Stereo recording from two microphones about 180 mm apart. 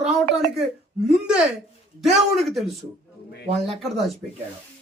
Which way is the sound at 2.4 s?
Centre (ahead or behind).